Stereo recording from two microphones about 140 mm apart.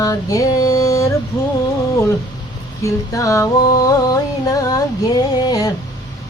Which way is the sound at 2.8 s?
20° left (ahead or behind).